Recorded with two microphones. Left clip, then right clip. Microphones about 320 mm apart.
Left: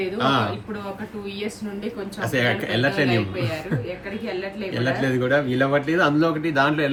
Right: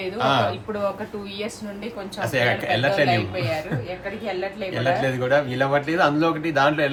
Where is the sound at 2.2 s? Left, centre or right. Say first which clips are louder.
Right 1 dB; centre.